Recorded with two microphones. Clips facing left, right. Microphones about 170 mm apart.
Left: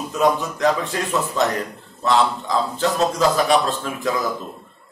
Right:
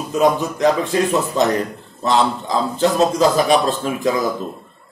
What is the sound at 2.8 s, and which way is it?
A man's voice, 20° right (ahead or behind).